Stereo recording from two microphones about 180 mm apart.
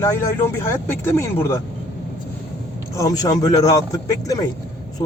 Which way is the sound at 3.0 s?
20° left (ahead or behind).